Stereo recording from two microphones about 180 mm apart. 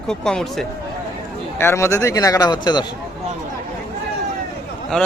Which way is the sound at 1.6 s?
15° left (ahead or behind).